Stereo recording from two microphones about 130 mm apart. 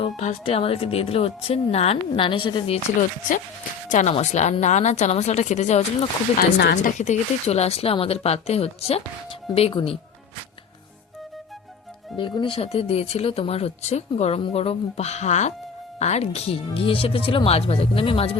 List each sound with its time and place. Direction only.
0.2 s speech: 55° left (ahead or behind)
3.8 s speech: 70° left (ahead or behind); by 9.9 s 45° left (ahead or behind)
12.1 s speech: 40° left (ahead or behind)